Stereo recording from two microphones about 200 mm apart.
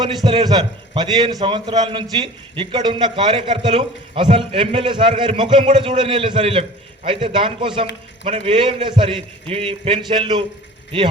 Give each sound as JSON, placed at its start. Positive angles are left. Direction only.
{"t": 0.0, "sound": "a man's voice", "side_deg": -20}